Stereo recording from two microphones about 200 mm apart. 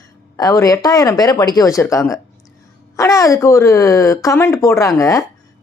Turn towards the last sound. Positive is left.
turn(degrees=15)  # may be behind; listen again after turning